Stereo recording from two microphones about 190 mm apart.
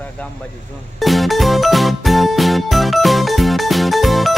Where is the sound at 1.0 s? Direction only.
Centre (ahead or behind).